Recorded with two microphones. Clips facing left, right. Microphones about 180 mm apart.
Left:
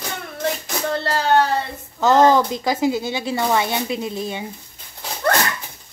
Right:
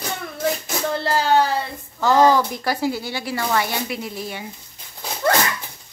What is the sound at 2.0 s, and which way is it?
Speech, 20° left (ahead or behind).